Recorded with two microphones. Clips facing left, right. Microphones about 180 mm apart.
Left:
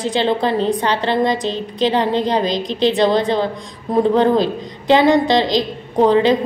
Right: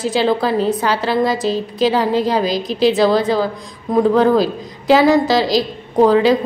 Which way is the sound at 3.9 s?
25° left (ahead or behind).